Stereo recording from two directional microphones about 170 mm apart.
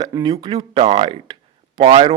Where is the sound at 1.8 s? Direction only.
35° right (ahead or behind).